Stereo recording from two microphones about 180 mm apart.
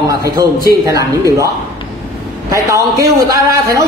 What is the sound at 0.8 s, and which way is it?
Speech, 15° right (ahead or behind).